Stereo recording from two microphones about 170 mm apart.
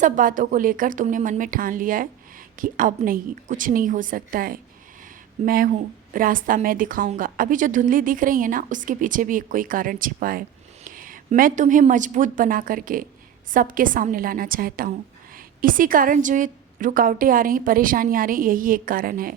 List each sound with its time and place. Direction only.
0.0 s a woman's voice: 50° right (ahead or behind)